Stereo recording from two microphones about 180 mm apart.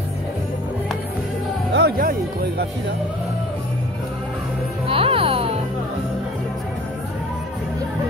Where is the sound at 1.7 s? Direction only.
60° right (ahead or behind).